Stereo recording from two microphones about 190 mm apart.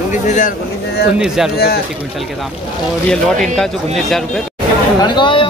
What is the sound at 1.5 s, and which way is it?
Speech, 55° left (ahead or behind).